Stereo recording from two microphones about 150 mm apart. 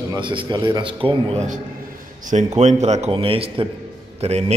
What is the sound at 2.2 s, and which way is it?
A man's voice, 50° right (ahead or behind).